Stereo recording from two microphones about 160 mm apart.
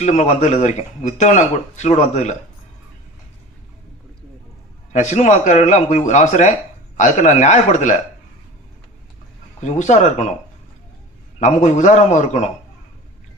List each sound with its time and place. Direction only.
0.0 s speech: 50° left (ahead or behind)
4.9 s speech: 50° left (ahead or behind)
9.6 s speech: 45° left (ahead or behind)
11.3 s speech: 50° left (ahead or behind)